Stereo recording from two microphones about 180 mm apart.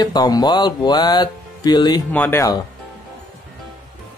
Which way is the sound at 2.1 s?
10° left (ahead or behind).